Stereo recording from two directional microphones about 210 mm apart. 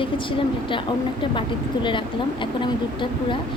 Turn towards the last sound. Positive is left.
turn(degrees=25)  # may be behind; listen again after turning